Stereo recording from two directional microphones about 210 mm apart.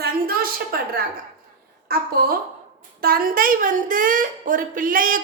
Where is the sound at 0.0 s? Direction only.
45° right (ahead or behind).